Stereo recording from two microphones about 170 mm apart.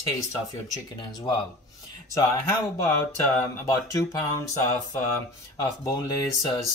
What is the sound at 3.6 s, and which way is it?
Speech, 20° left (ahead or behind).